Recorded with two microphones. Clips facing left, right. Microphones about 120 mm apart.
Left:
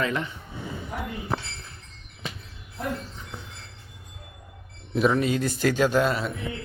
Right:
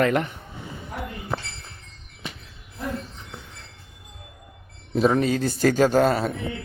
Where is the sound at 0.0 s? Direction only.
60° right (ahead or behind).